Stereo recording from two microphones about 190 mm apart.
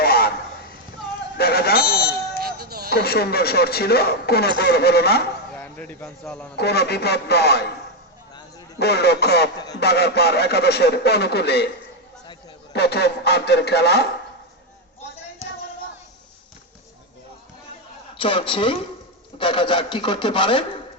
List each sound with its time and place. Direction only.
0.0 s a sound: 55° left (ahead or behind)
1.4 s buzzer: 55° left (ahead or behind)
2.4 s music: 55° right (ahead or behind)
2.9 s speech: 55° left (ahead or behind)
5.5 s a man's voice: 10° left (ahead or behind)
6.6 s speech: 60° left (ahead or behind)
8.8 s speech: 60° left (ahead or behind)
12.7 s speech: 60° left (ahead or behind)
18.2 s speech: 30° left (ahead or behind)